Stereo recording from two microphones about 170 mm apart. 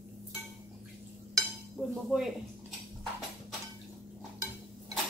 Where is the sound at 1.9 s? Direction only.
Centre (ahead or behind).